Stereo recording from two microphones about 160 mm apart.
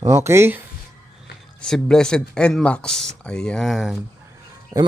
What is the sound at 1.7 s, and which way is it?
Speech, 5° left (ahead or behind).